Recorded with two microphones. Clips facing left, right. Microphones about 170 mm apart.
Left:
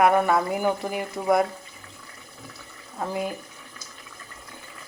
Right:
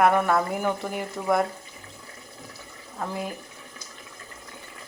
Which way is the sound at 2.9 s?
10° left (ahead or behind).